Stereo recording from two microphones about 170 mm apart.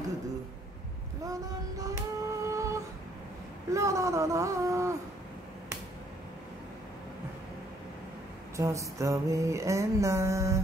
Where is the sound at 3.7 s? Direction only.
15° right (ahead or behind).